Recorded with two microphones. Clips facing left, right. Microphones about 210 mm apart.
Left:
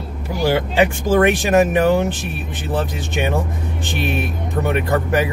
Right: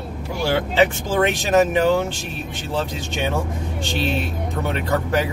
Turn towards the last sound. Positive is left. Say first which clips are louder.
# left 3 dB
turn(degrees=15)  # may be behind; listen again after turning